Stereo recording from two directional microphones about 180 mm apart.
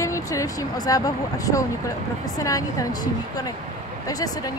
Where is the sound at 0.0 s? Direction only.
15° left (ahead or behind).